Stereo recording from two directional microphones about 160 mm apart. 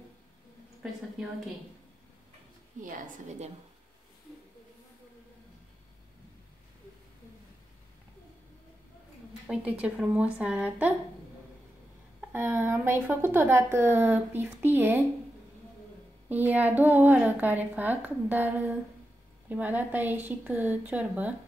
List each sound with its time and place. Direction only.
2.8 s a woman's voice: 45° right (ahead or behind)
9.5 s a woman's voice: 5° right (ahead or behind)
12.2 s a woman's voice: 10° right (ahead or behind)
16.3 s a woman's voice: 10° right (ahead or behind)